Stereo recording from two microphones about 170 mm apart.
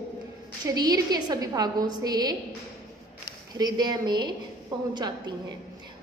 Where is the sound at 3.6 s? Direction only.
25° right (ahead or behind).